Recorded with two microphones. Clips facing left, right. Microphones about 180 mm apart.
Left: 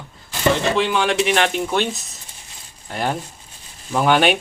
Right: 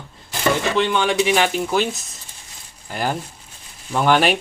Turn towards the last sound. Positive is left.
turn(degrees=0)  # may be behind; listen again after turning